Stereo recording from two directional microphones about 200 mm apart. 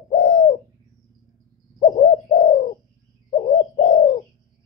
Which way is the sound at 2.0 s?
30° left (ahead or behind).